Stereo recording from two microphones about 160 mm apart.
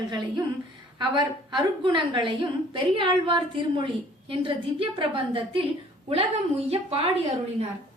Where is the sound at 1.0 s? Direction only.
30° right (ahead or behind).